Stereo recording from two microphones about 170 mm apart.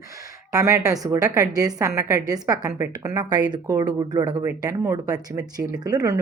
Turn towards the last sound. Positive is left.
turn(degrees=-20)  # may be behind; listen again after turning